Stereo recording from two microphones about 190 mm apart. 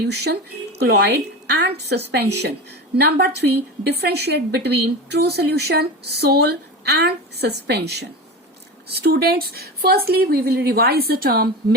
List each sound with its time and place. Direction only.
0.0 s a woman's voice: 60° right (ahead or behind)